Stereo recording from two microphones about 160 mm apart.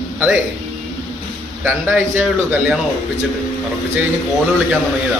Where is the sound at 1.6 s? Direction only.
10° right (ahead or behind).